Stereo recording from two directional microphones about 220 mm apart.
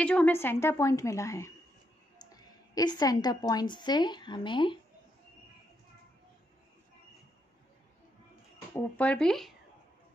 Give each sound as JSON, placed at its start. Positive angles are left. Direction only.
{"t": 0.0, "sound": "a woman's voice", "side_deg": 5}
{"t": 8.7, "sound": "speech", "side_deg": 5}